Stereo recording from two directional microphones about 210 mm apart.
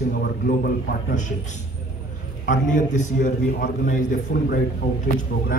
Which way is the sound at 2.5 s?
35° left (ahead or behind).